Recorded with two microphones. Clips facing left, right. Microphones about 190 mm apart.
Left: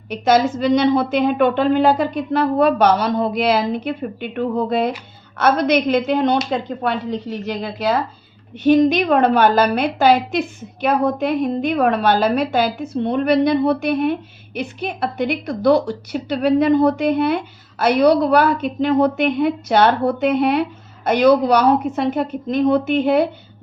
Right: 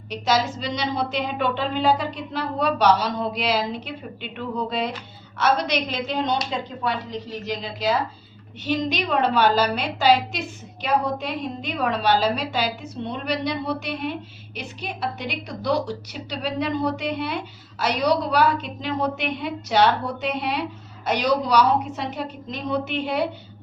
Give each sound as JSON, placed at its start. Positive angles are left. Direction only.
{"t": 0.1, "sound": "a woman's voice", "side_deg": 55}